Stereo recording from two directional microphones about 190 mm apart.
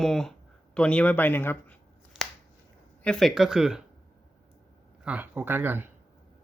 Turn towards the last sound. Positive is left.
turn(degrees=-10)  # may be behind; listen again after turning